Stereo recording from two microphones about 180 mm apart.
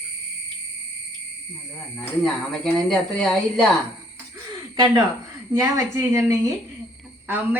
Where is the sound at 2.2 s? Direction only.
Centre (ahead or behind).